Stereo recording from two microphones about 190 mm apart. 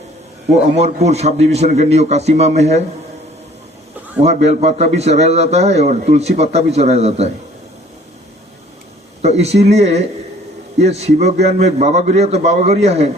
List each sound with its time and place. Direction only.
0.8 s a man's voice: 35° right (ahead or behind)
4.2 s a man's voice: 35° right (ahead or behind)
9.2 s a man's voice: 35° right (ahead or behind)